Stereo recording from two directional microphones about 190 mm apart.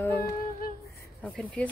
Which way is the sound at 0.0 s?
10° left (ahead or behind).